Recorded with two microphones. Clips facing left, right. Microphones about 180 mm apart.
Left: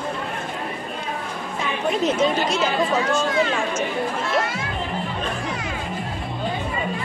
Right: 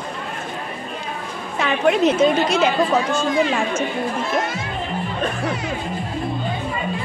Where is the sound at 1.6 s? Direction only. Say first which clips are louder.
Right 7 dB; 75° right (ahead or behind).